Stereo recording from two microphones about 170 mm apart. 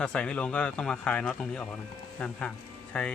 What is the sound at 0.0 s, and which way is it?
A man's voice, 5° left (ahead or behind).